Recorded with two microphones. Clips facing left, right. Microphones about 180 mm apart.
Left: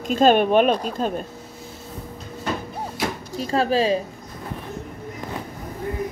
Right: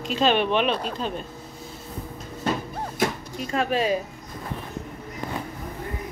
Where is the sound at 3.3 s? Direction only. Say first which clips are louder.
Left 4 dB; 35° left (ahead or behind).